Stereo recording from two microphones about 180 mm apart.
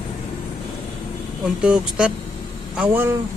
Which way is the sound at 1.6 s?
5° right (ahead or behind).